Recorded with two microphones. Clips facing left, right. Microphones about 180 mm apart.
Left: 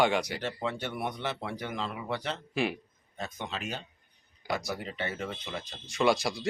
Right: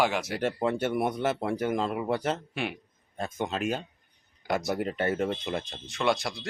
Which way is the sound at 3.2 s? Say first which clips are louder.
Right 7 dB; 45° right (ahead or behind).